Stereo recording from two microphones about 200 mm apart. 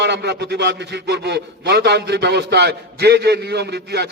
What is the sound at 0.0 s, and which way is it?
A man's voice, 60° right (ahead or behind).